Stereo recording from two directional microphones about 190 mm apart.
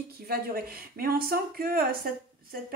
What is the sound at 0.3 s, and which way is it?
Speech, 50° right (ahead or behind).